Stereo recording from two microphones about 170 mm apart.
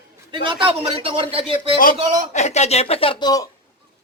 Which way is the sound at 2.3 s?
40° left (ahead or behind).